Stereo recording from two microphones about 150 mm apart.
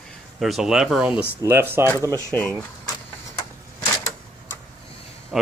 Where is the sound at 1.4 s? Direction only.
15° right (ahead or behind).